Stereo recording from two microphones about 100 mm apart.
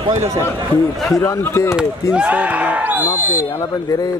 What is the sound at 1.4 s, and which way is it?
Speech, 25° left (ahead or behind).